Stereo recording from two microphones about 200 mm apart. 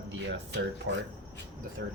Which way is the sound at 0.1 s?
60° right (ahead or behind).